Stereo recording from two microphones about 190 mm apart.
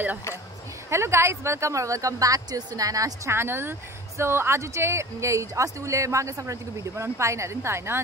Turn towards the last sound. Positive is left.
turn(degrees=-15)  # may be behind; listen again after turning